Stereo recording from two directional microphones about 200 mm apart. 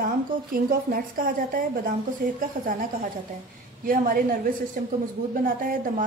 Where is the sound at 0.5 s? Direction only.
45° right (ahead or behind).